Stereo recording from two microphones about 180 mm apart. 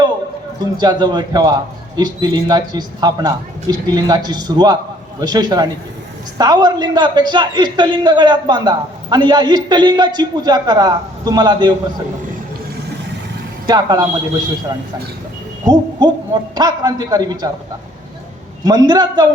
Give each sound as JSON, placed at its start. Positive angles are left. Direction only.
{"t": 0.8, "sound": "a man's voice", "side_deg": -25}
{"t": 13.7, "sound": "a man's voice", "side_deg": -20}
{"t": 15.6, "sound": "a man's voice", "side_deg": -25}
{"t": 18.6, "sound": "a man's voice", "side_deg": -20}